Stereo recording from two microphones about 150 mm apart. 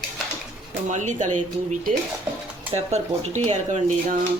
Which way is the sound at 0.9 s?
50° right (ahead or behind).